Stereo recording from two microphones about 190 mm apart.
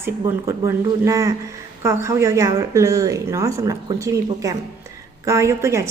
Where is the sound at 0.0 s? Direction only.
15° right (ahead or behind).